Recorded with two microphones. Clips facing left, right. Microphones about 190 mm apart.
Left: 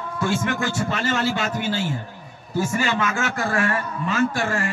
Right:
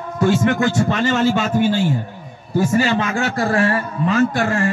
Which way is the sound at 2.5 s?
35° right (ahead or behind).